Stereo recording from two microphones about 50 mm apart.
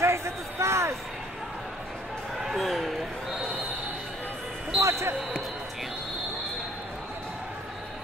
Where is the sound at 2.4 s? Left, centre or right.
Centre.